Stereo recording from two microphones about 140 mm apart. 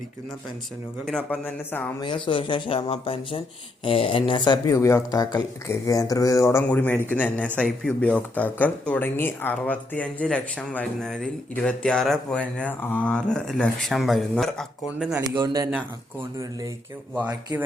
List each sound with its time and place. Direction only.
1.0 s speech: 10° left (ahead or behind)
2.0 s speech: 35° left (ahead or behind); by 15.2 s 5° right (ahead or behind)
15.2 s speech: 30° right (ahead or behind)